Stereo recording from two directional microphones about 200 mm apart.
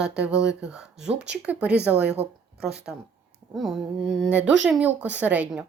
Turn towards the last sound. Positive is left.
turn(degrees=-10)  # may be behind; listen again after turning